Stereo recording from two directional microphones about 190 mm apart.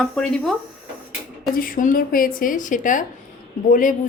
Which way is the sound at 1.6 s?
45° left (ahead or behind).